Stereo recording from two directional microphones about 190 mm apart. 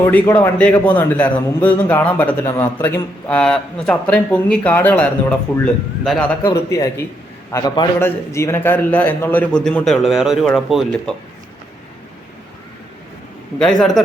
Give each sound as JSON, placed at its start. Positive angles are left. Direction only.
{"t": 0.0, "sound": "a man's voice", "side_deg": 10}
{"t": 6.5, "sound": "a man's voice", "side_deg": 20}
{"t": 13.6, "sound": "a man's voice", "side_deg": 5}